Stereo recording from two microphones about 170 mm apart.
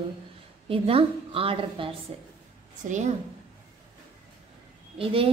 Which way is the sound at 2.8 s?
45° right (ahead or behind).